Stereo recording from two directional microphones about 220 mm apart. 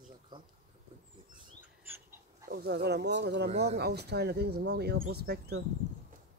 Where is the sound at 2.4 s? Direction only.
45° right (ahead or behind).